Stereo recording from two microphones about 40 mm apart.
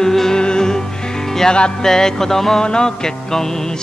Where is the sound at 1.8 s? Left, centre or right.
Centre.